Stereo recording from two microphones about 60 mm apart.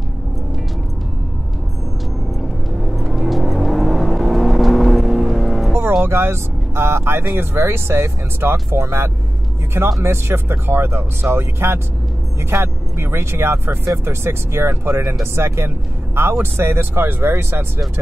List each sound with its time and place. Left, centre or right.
2.8 s vehicle: centre
5.7 s music: right
6.0 s speech: right